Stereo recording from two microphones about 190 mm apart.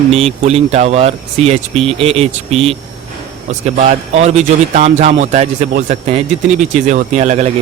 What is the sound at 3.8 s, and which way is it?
Speech, 35° right (ahead or behind).